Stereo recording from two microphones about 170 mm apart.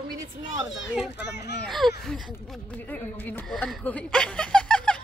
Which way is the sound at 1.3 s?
75° left (ahead or behind).